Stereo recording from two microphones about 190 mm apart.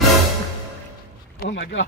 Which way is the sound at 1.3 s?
50° left (ahead or behind).